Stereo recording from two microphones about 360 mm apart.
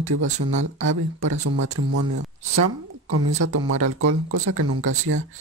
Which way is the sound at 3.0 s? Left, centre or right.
Right.